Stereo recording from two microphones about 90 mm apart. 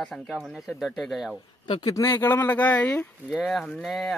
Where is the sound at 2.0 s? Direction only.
25° left (ahead or behind).